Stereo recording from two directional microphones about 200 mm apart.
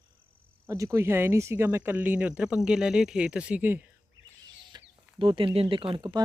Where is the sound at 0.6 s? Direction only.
15° right (ahead or behind).